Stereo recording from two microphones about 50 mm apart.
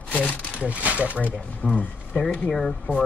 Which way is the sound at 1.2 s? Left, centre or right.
Left.